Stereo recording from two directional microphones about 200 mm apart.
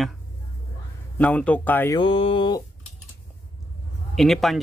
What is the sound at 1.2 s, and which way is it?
Speech, 5° left (ahead or behind).